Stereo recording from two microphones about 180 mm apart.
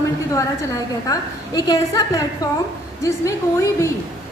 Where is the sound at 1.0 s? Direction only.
20° left (ahead or behind).